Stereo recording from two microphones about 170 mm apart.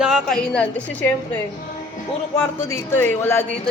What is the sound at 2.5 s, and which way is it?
Speech, 15° left (ahead or behind).